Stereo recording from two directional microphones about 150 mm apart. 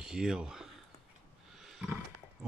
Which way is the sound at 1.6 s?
5° right (ahead or behind).